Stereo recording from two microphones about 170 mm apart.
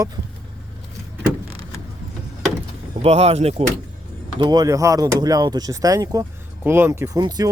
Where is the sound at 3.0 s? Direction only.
35° right (ahead or behind).